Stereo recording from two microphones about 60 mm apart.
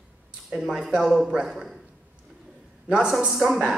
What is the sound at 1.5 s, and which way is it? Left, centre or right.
Speech, centre.